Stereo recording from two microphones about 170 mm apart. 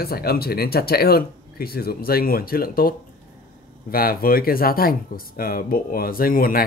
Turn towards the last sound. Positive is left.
turn(degrees=60)  # may be behind; listen again after turning